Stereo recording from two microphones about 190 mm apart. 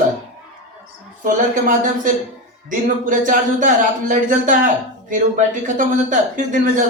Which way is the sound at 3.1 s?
45° right (ahead or behind).